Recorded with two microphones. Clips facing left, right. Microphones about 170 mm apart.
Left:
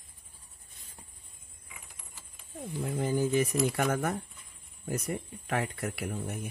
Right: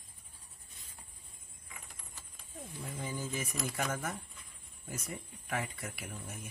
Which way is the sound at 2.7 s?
65° left (ahead or behind).